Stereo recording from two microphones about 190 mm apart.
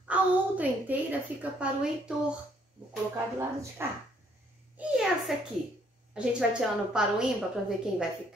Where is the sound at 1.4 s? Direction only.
5° right (ahead or behind).